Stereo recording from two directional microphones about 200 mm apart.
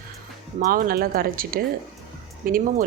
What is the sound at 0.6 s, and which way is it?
Speech, 45° right (ahead or behind).